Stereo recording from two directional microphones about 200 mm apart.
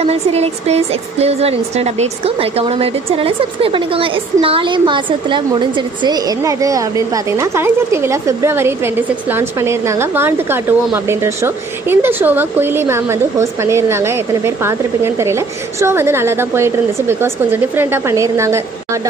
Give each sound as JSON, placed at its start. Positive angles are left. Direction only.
{"t": 0.0, "sound": "speech", "side_deg": -30}